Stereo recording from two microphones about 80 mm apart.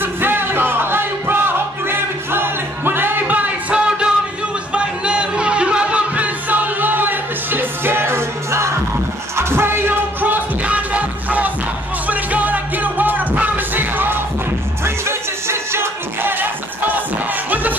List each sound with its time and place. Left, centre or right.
0.0 s music: right